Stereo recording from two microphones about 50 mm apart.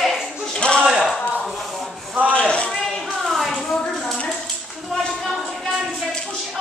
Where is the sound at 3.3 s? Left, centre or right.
Centre.